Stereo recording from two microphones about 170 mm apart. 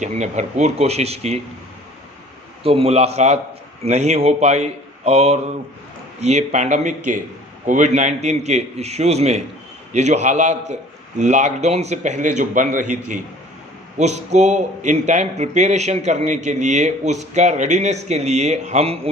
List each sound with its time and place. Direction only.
0.0 s a man's voice: 45° right (ahead or behind)
2.6 s a man's voice: 35° right (ahead or behind)